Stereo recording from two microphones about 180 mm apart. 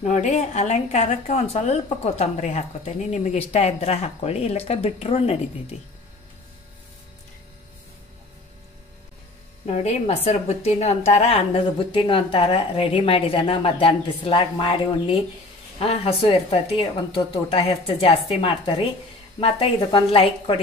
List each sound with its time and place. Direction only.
0.0 s speech: 40° left (ahead or behind)
9.7 s a woman's voice: 35° left (ahead or behind)